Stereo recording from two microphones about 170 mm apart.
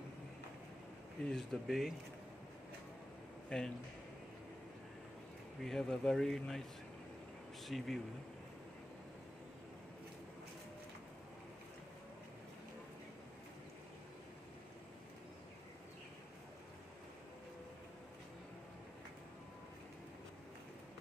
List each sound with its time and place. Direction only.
1.3 s speech: centre (ahead or behind)
3.4 s speech: 5° left (ahead or behind)
5.6 s speech: centre (ahead or behind)
7.6 s speech: centre (ahead or behind)